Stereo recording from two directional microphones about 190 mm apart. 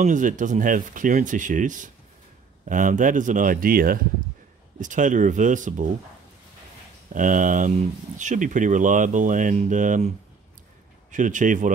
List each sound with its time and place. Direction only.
0.0 s speech: 40° right (ahead or behind)
7.2 s speech: 45° right (ahead or behind)